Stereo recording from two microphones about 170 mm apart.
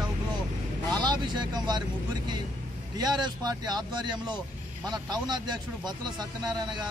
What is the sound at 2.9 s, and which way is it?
Speech, 25° right (ahead or behind).